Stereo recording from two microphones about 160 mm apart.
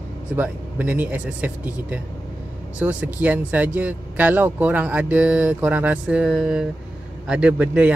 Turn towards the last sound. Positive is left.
turn(degrees=-10)  # may be behind; listen again after turning